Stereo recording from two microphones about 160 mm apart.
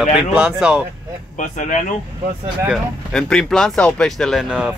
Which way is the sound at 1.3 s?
50° left (ahead or behind).